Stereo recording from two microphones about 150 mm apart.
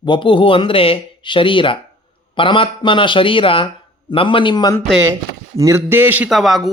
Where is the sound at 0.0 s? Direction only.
35° left (ahead or behind).